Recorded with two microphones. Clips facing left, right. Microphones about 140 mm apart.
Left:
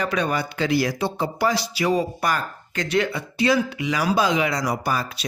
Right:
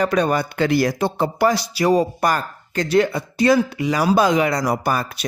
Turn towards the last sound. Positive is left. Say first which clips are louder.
# right 3 dB
turn(degrees=-50)  # may be behind; listen again after turning